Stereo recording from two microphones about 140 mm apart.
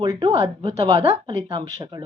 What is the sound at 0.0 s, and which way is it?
A woman's voice, 35° right (ahead or behind).